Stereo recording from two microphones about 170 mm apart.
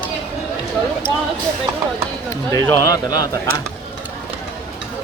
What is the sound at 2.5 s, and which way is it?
Speech, 20° left (ahead or behind).